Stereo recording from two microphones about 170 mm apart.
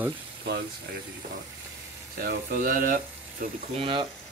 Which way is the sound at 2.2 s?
60° right (ahead or behind).